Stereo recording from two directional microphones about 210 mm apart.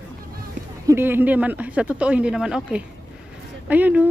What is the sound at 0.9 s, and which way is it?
Speech, 10° right (ahead or behind).